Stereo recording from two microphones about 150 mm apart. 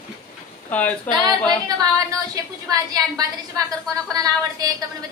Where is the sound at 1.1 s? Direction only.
10° left (ahead or behind).